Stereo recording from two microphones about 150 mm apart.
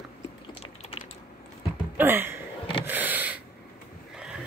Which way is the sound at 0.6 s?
40° left (ahead or behind).